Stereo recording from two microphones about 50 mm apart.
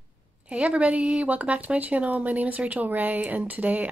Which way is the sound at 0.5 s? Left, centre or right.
Right.